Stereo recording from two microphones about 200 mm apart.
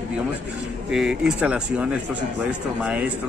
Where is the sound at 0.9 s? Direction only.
5° right (ahead or behind).